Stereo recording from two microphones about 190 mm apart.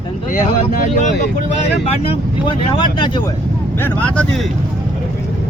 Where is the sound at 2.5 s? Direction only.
25° left (ahead or behind).